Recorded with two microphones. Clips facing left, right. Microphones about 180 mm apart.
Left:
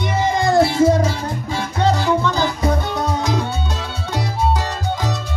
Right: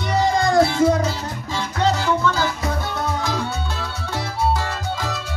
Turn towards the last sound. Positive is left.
turn(degrees=20)  # may be behind; listen again after turning